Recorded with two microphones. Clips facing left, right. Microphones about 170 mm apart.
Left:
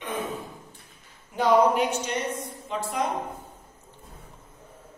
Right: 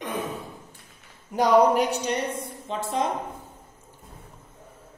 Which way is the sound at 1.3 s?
40° right (ahead or behind).